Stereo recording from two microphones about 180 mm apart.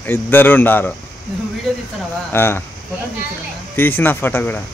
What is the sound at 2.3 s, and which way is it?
Speech, 10° left (ahead or behind).